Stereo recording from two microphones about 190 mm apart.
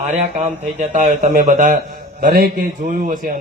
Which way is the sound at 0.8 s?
40° right (ahead or behind).